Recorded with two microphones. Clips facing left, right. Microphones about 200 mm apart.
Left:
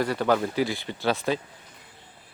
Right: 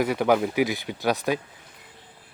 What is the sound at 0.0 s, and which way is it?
Speech, 15° right (ahead or behind).